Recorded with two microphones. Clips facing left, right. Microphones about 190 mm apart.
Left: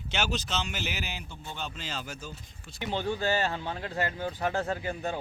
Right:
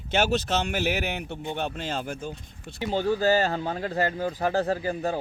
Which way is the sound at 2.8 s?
40° right (ahead or behind).